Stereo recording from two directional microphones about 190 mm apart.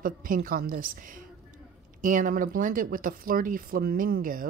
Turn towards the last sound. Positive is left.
turn(degrees=-50)  # may be behind; listen again after turning